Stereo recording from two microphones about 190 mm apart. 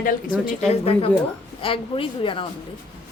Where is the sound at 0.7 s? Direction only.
30° left (ahead or behind).